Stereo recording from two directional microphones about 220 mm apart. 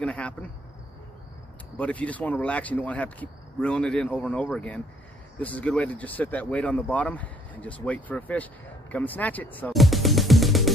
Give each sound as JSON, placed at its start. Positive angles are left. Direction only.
{"t": 0.0, "sound": "speech", "side_deg": 5}
{"t": 1.8, "sound": "speech", "side_deg": 5}
{"t": 8.9, "sound": "music", "side_deg": 5}